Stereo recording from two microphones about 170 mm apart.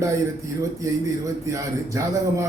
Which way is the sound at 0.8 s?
20° right (ahead or behind).